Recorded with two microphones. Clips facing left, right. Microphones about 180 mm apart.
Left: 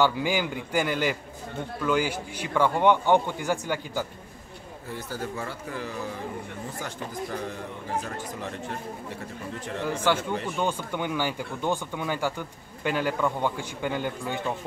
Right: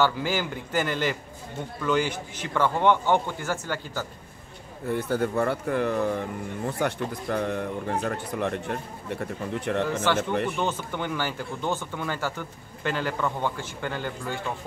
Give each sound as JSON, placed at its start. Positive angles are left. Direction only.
{"t": 0.0, "sound": "speech", "side_deg": 15}
{"t": 4.8, "sound": "speech", "side_deg": -60}
{"t": 9.8, "sound": "speech", "side_deg": 10}